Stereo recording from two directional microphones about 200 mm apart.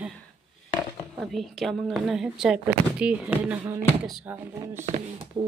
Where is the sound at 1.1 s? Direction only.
Centre (ahead or behind).